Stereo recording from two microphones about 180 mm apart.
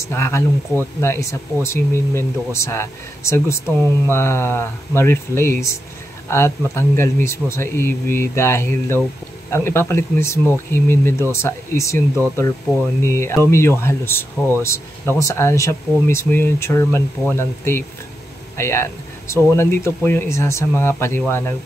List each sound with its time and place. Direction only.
0.1 s speech: 15° left (ahead or behind)
13.0 s speech: 15° left (ahead or behind)